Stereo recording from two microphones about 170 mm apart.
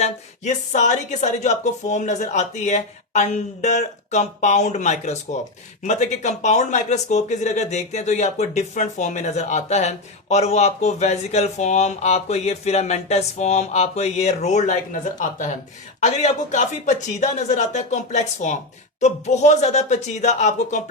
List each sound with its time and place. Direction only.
0.0 s a woman's voice: 45° left (ahead or behind)
16.0 s a woman's voice: 45° left (ahead or behind)